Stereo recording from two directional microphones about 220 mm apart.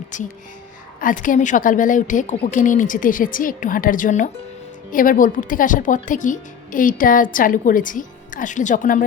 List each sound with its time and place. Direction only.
0.1 s speech: 35° left (ahead or behind)